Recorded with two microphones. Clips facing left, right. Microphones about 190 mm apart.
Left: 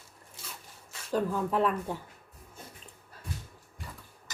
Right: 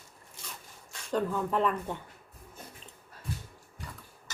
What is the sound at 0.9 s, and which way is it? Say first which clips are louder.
Speech: left 1 dB; 5° left (ahead or behind).